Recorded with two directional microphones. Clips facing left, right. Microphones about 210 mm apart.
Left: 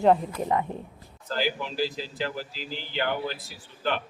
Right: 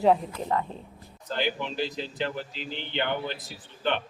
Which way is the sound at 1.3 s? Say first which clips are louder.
Left 1 dB; 5° left (ahead or behind).